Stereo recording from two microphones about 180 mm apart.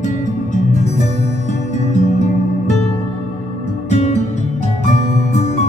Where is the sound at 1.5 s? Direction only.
40° left (ahead or behind).